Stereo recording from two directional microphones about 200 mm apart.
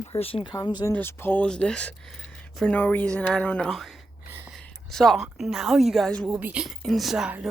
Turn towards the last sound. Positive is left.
turn(degrees=-5)  # may be behind; listen again after turning